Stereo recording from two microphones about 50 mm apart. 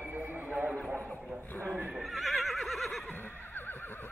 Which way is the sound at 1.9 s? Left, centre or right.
Centre.